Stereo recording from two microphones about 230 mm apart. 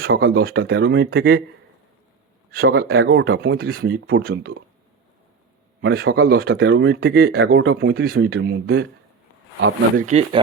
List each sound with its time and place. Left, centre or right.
0.0 s speech: right
2.5 s speech: right
5.8 s speech: right
10.0 s speech: right